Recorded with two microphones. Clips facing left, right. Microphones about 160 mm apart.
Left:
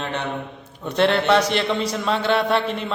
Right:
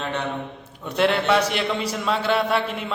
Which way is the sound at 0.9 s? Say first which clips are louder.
Left 2 dB; 5° right (ahead or behind).